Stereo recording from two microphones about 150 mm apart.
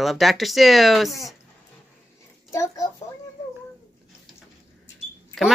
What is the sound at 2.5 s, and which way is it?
Speech, 20° left (ahead or behind).